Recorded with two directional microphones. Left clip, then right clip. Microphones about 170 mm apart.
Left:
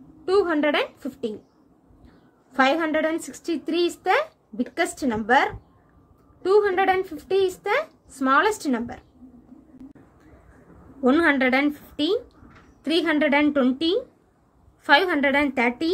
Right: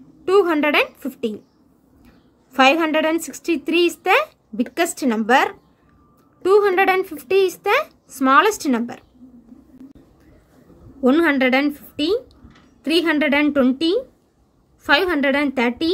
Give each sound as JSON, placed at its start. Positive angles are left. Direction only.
{"t": 0.2, "sound": "a woman's voice", "side_deg": -25}
{"t": 2.5, "sound": "a woman's voice", "side_deg": -20}
{"t": 11.0, "sound": "a woman's voice", "side_deg": -25}